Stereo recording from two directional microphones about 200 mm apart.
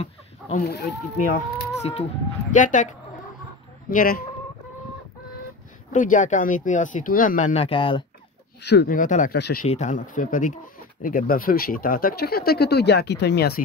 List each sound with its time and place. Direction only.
1.1 s speech: 40° left (ahead or behind)
5.9 s speech: 40° left (ahead or behind)
8.6 s speech: 50° left (ahead or behind)
9.7 s speech: 35° left (ahead or behind); by 13.6 s 55° left (ahead or behind)